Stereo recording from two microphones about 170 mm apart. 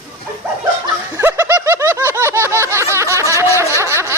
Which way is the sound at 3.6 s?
15° right (ahead or behind).